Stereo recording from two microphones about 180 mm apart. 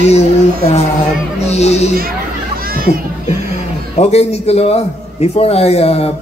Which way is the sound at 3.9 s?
35° left (ahead or behind).